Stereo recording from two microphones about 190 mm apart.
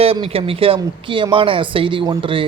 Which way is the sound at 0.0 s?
30° right (ahead or behind).